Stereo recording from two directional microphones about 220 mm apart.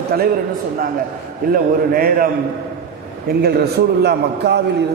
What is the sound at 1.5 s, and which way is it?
A man's voice, 40° right (ahead or behind).